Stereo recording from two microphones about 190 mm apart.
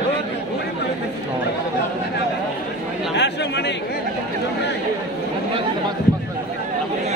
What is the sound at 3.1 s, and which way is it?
Speech, 65° left (ahead or behind).